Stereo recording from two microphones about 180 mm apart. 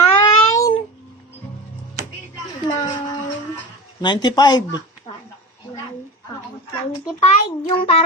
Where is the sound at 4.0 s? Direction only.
25° left (ahead or behind).